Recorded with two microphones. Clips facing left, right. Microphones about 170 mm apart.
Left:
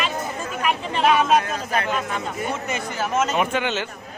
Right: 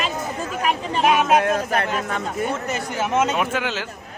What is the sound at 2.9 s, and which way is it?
Speech, 20° right (ahead or behind).